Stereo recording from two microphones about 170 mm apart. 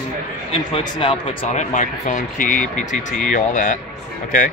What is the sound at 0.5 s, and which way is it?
Speech, 35° left (ahead or behind).